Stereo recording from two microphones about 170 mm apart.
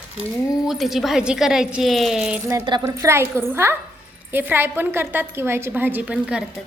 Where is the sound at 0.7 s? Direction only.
Centre (ahead or behind).